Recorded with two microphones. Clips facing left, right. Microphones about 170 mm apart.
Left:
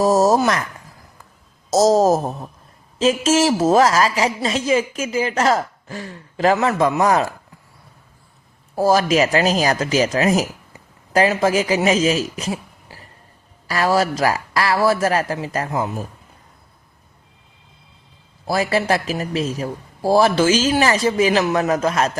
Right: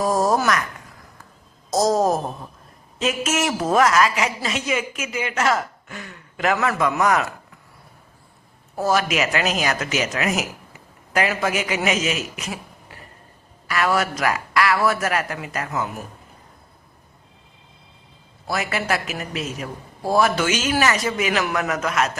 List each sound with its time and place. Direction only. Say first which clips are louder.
0.0 s speech: left 5 dB; 25° left (ahead or behind)
1.7 s a woman's voice: left 5 dB; 25° left (ahead or behind)
8.7 s a woman's voice: left 5 dB; 35° left (ahead or behind)
18.4 s a woman's voice: left 6 dB; 30° left (ahead or behind)